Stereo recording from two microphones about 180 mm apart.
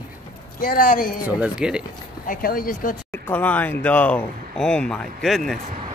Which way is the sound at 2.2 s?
50° left (ahead or behind).